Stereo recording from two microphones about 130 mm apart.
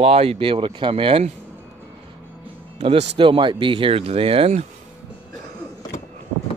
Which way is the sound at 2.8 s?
45° right (ahead or behind).